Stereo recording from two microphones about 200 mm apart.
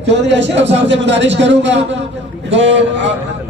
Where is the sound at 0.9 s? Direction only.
60° right (ahead or behind).